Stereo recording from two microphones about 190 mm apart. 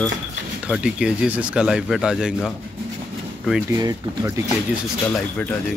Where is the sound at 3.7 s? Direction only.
15° right (ahead or behind).